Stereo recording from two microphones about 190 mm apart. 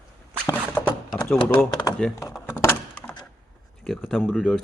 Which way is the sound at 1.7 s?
25° left (ahead or behind).